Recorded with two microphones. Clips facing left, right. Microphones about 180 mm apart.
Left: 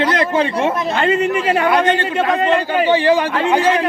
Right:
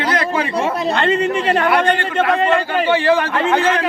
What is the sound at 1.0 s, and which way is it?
A man's voice, 10° left (ahead or behind).